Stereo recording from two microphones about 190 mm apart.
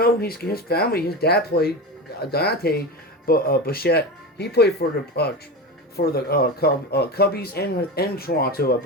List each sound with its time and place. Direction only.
0.0 s speech: 50° left (ahead or behind)